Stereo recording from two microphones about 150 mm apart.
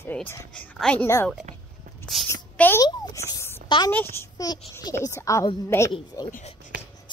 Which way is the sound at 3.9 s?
15° left (ahead or behind).